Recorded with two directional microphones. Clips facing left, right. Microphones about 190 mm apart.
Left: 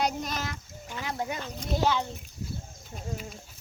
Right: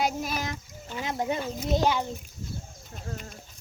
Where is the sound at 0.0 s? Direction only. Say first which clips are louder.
Right 1 dB; 5° right (ahead or behind).